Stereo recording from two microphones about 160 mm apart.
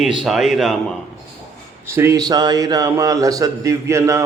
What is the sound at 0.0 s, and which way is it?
Speech, centre (ahead or behind).